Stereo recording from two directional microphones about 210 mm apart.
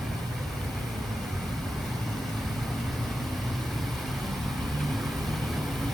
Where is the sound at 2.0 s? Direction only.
Centre (ahead or behind).